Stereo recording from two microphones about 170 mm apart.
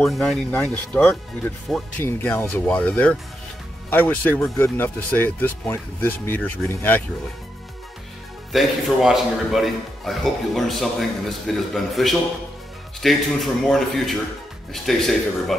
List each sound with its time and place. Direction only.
0.0 s a man's voice: centre (ahead or behind)
0.5 s speech: 10° left (ahead or behind)
8.5 s a man's voice: centre (ahead or behind)